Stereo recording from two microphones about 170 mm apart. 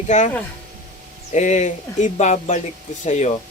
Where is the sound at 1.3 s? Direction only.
45° left (ahead or behind).